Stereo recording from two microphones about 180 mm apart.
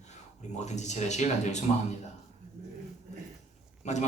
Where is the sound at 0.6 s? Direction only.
40° left (ahead or behind).